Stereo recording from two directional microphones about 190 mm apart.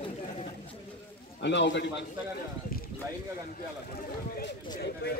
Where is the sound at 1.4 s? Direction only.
65° left (ahead or behind).